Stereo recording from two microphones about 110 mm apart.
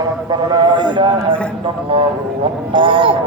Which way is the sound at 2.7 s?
50° right (ahead or behind).